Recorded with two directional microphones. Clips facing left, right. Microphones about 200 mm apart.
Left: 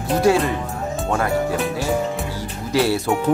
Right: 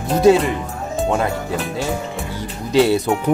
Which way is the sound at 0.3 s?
20° right (ahead or behind).